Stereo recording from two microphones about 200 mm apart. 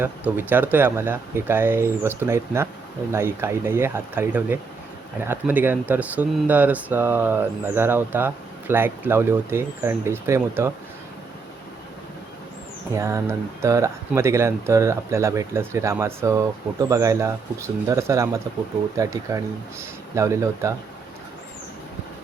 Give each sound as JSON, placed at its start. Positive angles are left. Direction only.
{"t": 0.0, "sound": "speech", "side_deg": -10}
{"t": 12.9, "sound": "speech", "side_deg": -15}